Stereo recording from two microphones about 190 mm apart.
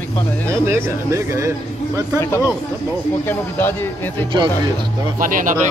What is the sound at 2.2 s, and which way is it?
Speech, 15° left (ahead or behind).